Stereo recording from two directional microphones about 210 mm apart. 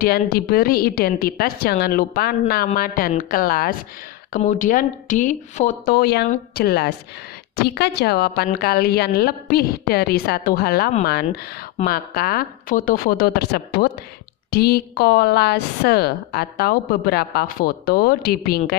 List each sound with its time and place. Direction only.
0.0 s a woman's voice: 45° left (ahead or behind)